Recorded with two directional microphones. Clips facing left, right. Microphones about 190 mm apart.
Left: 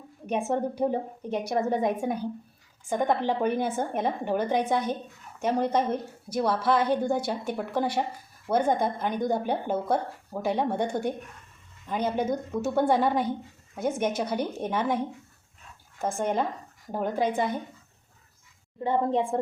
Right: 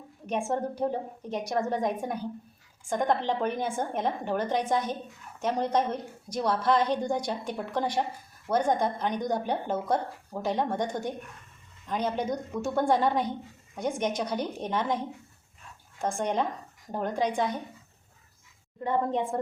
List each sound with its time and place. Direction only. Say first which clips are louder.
0.3 s a woman's voice: left 2 dB; 10° left (ahead or behind)
18.8 s a woman's voice: left 2 dB; 30° left (ahead or behind)